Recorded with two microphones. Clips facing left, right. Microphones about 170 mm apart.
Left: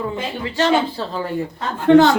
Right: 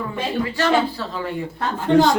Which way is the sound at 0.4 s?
25° left (ahead or behind).